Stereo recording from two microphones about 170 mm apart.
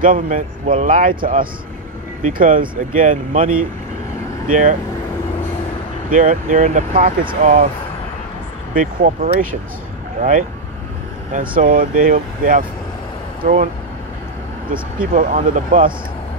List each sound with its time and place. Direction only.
0.0 s speech: 50° right (ahead or behind)
4.5 s speech: 50° right (ahead or behind)
6.0 s speech: 50° right (ahead or behind)
8.7 s speech: 50° right (ahead or behind)
11.3 s speech: 55° right (ahead or behind)
14.7 s speech: 55° right (ahead or behind)